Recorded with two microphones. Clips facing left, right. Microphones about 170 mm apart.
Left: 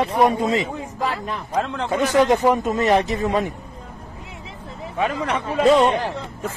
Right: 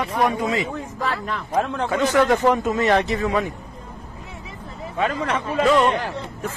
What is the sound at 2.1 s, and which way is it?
Speech, 20° left (ahead or behind).